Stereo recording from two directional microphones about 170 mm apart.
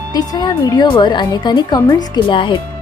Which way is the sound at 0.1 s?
20° left (ahead or behind).